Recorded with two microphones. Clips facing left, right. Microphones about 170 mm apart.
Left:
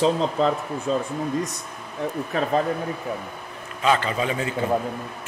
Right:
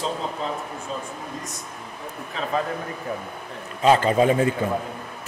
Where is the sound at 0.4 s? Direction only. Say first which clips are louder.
Left 7 dB; 85° left.